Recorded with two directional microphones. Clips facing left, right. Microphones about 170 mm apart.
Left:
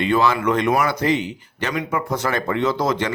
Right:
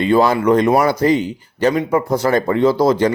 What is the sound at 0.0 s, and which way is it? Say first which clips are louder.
Speech: right 5 dB; 35° right (ahead or behind).